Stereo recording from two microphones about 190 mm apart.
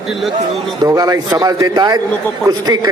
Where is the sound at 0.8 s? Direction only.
20° right (ahead or behind).